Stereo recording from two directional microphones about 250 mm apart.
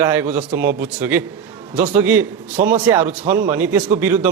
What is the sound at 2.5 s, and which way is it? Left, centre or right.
Speech, right.